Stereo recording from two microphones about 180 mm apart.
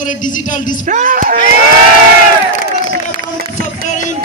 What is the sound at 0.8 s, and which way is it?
Speech, 45° right (ahead or behind).